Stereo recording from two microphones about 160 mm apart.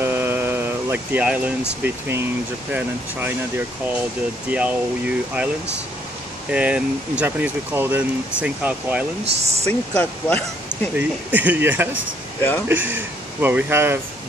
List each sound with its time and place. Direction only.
0.0 s a sound: 15° right (ahead or behind)
1.8 s speech: 15° right (ahead or behind)
6.5 s speech: 10° right (ahead or behind)
9.2 s speech: 40° right (ahead or behind)
9.7 s speech: 10° left (ahead or behind)
11.0 s speech: 10° right (ahead or behind)